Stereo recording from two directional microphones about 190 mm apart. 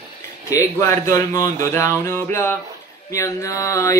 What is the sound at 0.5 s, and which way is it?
Mantra, 15° left (ahead or behind).